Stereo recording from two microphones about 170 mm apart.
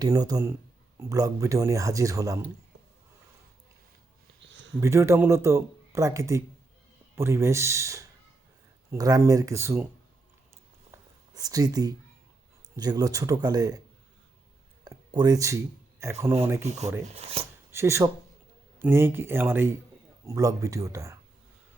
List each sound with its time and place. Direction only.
0.0 s speech: 20° right (ahead or behind)
4.4 s a sound: 90° right
4.8 s speech: 15° right (ahead or behind)
11.3 s speech: 20° right (ahead or behind)
14.8 s speech: 25° right (ahead or behind)
16.6 s speech: 40° right (ahead or behind)
17.7 s speech: 15° right (ahead or behind)